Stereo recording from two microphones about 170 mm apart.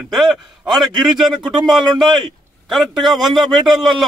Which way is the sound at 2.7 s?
Centre (ahead or behind).